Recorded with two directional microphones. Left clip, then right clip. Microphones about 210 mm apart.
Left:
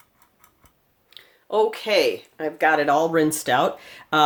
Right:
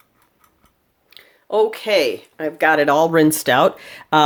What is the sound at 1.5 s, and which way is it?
Speech, 25° right (ahead or behind).